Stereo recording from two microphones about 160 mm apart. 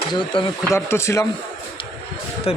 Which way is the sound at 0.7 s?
15° left (ahead or behind).